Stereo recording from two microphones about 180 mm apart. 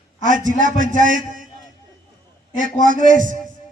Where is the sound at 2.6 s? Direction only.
45° right (ahead or behind).